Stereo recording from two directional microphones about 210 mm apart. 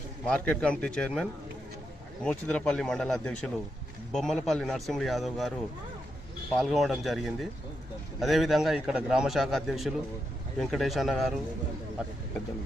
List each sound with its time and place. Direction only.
0.3 s a man's voice: 5° left (ahead or behind)
6.6 s a man's voice: centre (ahead or behind)